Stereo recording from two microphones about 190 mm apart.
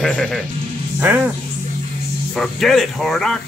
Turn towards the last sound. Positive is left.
turn(degrees=0)  # may be behind; listen again after turning